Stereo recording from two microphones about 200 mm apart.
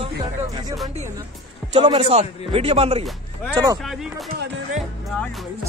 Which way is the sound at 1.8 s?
25° right (ahead or behind).